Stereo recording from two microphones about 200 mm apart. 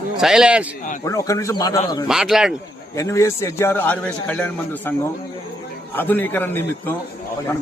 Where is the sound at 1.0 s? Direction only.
15° left (ahead or behind).